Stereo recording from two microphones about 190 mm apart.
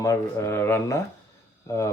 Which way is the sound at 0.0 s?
15° left (ahead or behind).